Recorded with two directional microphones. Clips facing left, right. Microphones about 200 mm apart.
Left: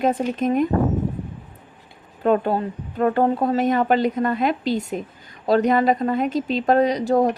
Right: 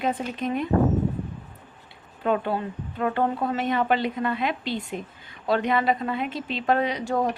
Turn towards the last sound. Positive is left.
turn(degrees=35)  # may be behind; listen again after turning